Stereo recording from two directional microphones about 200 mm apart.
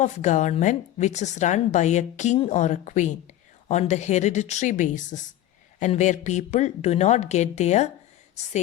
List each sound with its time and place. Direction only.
0.0 s a woman's voice: 35° left (ahead or behind)